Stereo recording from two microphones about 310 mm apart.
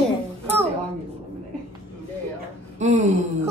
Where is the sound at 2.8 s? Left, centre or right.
Right.